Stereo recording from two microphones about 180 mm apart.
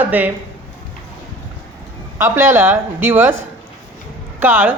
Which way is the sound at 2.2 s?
15° right (ahead or behind).